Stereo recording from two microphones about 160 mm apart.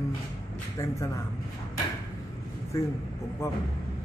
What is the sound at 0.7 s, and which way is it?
Speech, 20° left (ahead or behind).